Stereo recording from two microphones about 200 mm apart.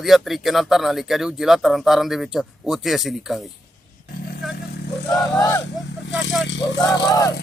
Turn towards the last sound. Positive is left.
turn(degrees=20)  # may be behind; listen again after turning